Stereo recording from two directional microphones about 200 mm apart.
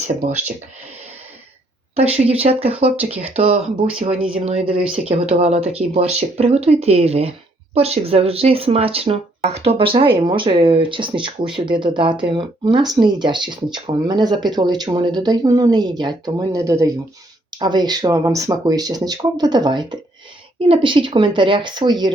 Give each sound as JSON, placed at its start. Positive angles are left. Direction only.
{"t": 0.1, "sound": "speech", "side_deg": -35}
{"t": 2.0, "sound": "speech", "side_deg": -30}